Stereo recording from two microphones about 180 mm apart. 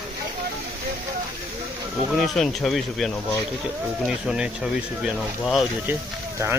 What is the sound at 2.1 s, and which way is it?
Speech, centre (ahead or behind).